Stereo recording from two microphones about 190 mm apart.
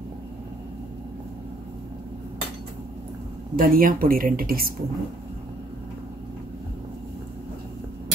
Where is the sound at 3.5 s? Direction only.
50° right (ahead or behind).